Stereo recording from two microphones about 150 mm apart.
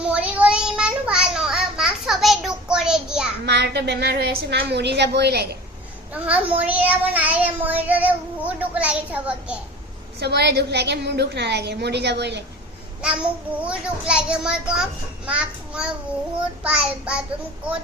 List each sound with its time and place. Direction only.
0.0 s child singing: 10° right (ahead or behind)
3.4 s a woman's voice: 90° right
6.2 s child singing: 10° right (ahead or behind)
10.2 s a woman's voice: 90° right
13.0 s child singing: 5° right (ahead or behind)